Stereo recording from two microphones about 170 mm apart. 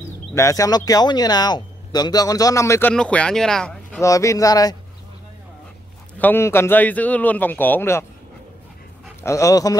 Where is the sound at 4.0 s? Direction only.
20° left (ahead or behind).